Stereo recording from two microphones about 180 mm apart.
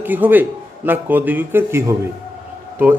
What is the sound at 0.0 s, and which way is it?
A man's voice, 10° right (ahead or behind).